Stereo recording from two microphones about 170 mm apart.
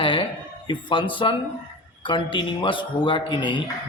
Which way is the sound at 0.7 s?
30° left (ahead or behind).